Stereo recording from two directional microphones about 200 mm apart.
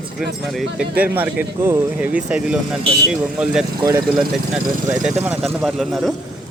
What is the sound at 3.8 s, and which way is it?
Speech, 15° right (ahead or behind).